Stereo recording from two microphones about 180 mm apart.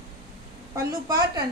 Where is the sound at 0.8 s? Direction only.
20° right (ahead or behind).